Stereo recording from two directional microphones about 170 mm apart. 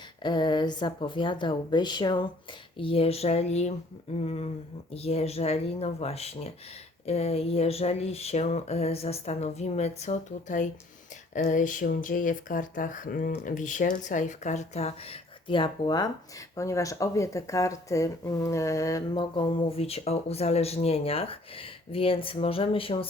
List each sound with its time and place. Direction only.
0.2 s a woman's voice: 25° left (ahead or behind)